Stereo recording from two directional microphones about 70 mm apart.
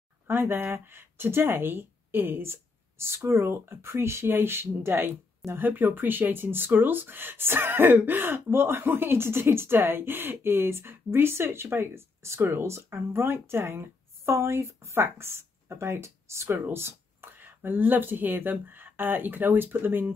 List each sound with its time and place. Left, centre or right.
0.3 s speech: right